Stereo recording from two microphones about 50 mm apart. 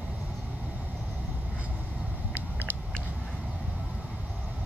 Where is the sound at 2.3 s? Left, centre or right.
Right.